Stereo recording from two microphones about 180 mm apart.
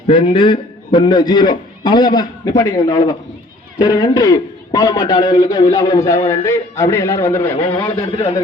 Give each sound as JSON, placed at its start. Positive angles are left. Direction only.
{"t": 0.1, "sound": "a man's voice", "side_deg": 30}
{"t": 7.4, "sound": "a man's voice", "side_deg": 30}